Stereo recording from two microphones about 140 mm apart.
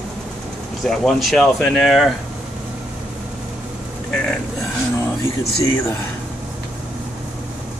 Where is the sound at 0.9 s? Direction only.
Centre (ahead or behind).